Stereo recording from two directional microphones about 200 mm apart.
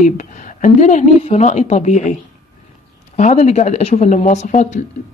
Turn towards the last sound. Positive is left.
turn(degrees=35)  # may be behind; listen again after turning